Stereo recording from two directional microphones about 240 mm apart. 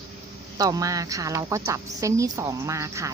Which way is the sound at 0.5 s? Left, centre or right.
Centre.